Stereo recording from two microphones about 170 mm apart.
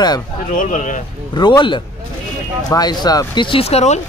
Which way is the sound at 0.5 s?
50° left (ahead or behind).